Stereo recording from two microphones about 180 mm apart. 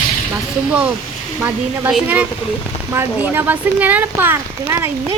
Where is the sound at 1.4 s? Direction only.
5° right (ahead or behind).